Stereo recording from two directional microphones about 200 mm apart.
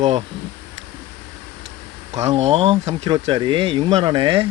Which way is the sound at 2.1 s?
35° right (ahead or behind).